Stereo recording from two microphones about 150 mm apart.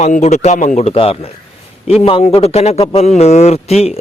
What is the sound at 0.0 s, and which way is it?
Speech, 50° left (ahead or behind).